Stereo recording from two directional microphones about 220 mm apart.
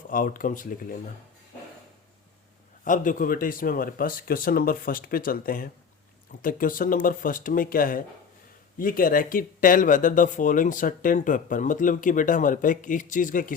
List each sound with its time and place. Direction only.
0.1 s speech: 40° left (ahead or behind)
2.8 s speech: 35° left (ahead or behind)